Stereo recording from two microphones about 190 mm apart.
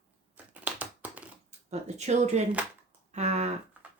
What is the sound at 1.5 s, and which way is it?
Speech, 35° right (ahead or behind).